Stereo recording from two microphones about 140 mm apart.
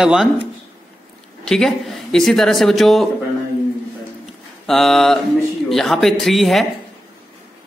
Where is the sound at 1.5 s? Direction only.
Centre (ahead or behind).